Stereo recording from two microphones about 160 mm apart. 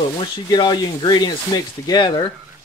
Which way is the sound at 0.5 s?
25° left (ahead or behind).